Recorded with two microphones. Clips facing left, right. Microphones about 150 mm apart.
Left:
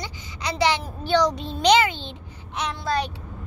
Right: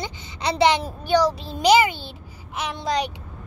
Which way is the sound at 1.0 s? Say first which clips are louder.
Left 2 dB; 10° right (ahead or behind).